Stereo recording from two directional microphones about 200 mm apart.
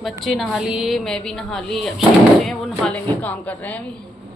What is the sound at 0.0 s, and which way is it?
A woman's voice, centre (ahead or behind).